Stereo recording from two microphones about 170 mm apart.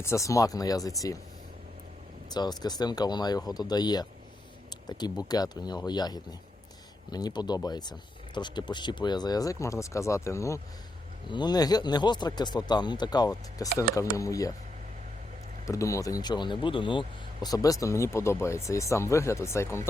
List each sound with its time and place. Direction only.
0.0 s speech: 15° left (ahead or behind)
2.3 s speech: 25° left (ahead or behind)
15.6 s speech: 20° left (ahead or behind)